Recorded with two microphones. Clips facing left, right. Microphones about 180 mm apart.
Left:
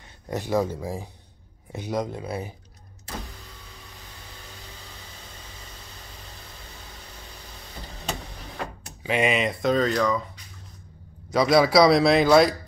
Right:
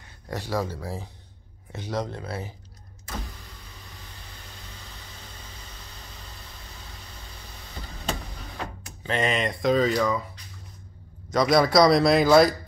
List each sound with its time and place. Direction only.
0.3 s speech: 15° left (ahead or behind)
9.0 s a man's voice: 10° left (ahead or behind)
11.3 s a man's voice: 5° left (ahead or behind)